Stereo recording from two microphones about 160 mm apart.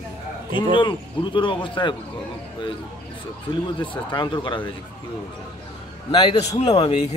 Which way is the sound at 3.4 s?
30° left (ahead or behind).